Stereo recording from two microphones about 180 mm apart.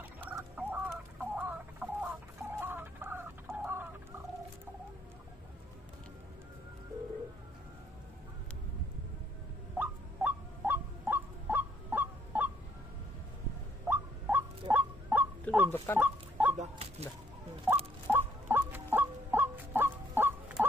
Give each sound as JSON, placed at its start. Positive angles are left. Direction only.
{"t": 0.0, "sound": "chicken", "side_deg": -10}
{"t": 2.6, "sound": "a sound", "side_deg": -10}
{"t": 9.8, "sound": "fowl", "side_deg": -10}
{"t": 13.8, "sound": "fowl", "side_deg": -10}
{"t": 15.5, "sound": "fowl", "side_deg": 5}
{"t": 16.0, "sound": "fowl", "side_deg": -10}
{"t": 16.5, "sound": "a sound", "side_deg": -35}
{"t": 17.7, "sound": "a sound", "side_deg": -10}
{"t": 18.0, "sound": "fowl", "side_deg": -10}